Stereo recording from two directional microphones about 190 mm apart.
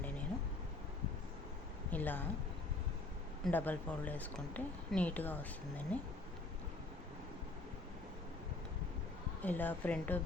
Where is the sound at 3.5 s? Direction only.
10° left (ahead or behind).